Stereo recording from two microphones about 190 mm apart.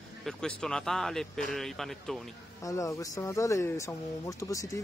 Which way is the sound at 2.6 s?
15° left (ahead or behind).